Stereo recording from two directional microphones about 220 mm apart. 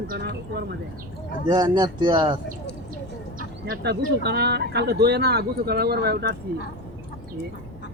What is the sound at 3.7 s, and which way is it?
Speech, 50° right (ahead or behind).